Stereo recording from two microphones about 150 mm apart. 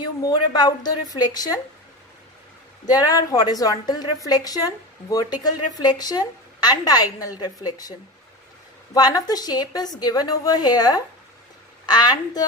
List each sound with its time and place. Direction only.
0.0 s a woman's voice: 25° left (ahead or behind)
2.9 s a woman's voice: 25° left (ahead or behind)
8.9 s a woman's voice: 25° left (ahead or behind)